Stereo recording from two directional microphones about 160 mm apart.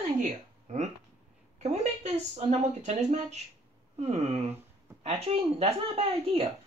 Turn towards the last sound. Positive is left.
turn(degrees=-35)  # may be behind; listen again after turning